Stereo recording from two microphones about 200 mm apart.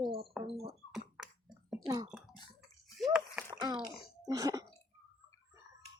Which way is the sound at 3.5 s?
20° right (ahead or behind).